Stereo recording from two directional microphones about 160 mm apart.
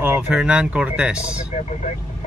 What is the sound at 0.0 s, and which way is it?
Speech, 10° right (ahead or behind).